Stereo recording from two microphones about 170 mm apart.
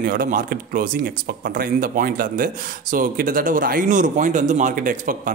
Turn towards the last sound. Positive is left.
turn(degrees=-55)  # may be behind; listen again after turning